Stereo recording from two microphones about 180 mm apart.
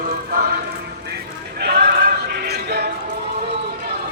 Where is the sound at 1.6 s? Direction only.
65° right (ahead or behind).